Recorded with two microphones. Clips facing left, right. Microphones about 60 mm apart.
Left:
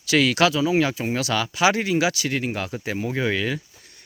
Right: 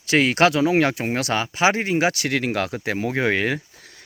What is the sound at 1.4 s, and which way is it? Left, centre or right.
Speech, right.